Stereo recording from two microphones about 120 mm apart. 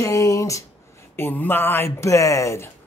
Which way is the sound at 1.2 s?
15° left (ahead or behind).